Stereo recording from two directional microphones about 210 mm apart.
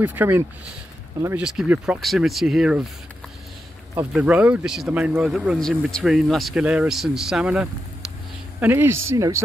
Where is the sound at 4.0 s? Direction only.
5° right (ahead or behind).